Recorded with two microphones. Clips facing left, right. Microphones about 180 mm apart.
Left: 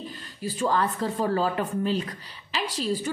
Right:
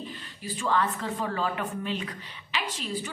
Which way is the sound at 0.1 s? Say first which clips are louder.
Left 4 dB; 40° left (ahead or behind).